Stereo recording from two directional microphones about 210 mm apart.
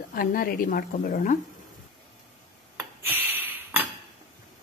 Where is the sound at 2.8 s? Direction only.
10° right (ahead or behind).